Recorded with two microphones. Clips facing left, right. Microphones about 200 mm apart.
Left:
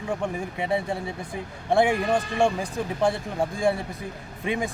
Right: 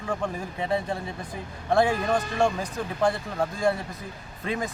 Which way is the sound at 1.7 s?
15° left (ahead or behind).